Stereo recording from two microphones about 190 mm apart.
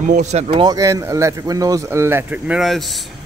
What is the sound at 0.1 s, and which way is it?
Speech, 35° right (ahead or behind).